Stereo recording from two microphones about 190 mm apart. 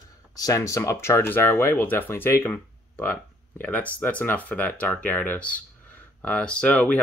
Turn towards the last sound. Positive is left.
turn(degrees=5)  # may be behind; listen again after turning